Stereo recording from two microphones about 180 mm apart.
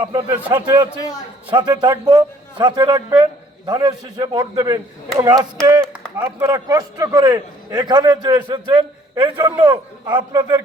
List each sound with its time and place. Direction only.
0.0 s a man's voice: 25° right (ahead or behind)
0.3 s a man's voice: 10° right (ahead or behind)
0.5 s a man's voice: 25° right (ahead or behind)
0.9 s a man's voice: 20° left (ahead or behind)
1.5 s a man's voice: 25° right (ahead or behind)